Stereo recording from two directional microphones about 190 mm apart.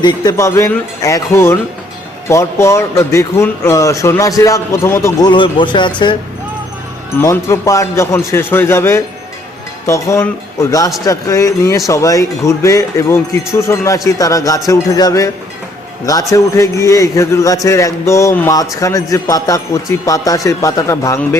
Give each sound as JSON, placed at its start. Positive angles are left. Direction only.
{"t": 0.0, "sound": "speech", "side_deg": 20}
{"t": 5.3, "sound": "speech", "side_deg": 25}
{"t": 7.2, "sound": "speech", "side_deg": 15}
{"t": 16.3, "sound": "speech", "side_deg": 15}